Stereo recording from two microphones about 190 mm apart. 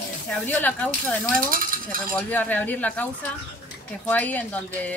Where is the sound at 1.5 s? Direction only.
45° right (ahead or behind).